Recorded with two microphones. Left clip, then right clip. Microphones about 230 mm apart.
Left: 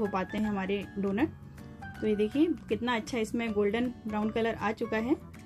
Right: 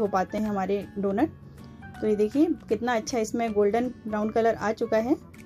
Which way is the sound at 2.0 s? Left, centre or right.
Centre.